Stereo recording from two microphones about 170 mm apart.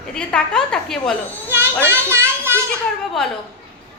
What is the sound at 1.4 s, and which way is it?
Children playing, 15° right (ahead or behind).